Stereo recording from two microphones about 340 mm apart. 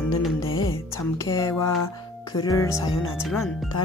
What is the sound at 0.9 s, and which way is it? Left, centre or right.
Speech, centre.